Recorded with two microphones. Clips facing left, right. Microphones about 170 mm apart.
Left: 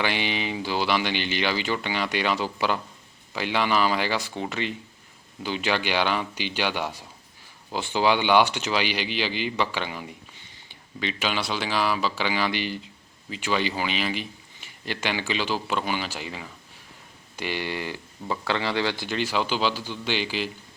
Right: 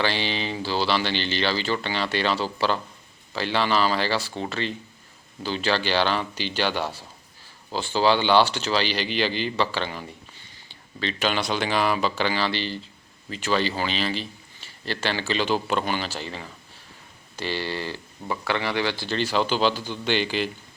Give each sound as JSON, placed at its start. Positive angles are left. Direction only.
{"t": 0.0, "sound": "a man's voice", "side_deg": 15}
{"t": 19.1, "sound": "a man's voice", "side_deg": 10}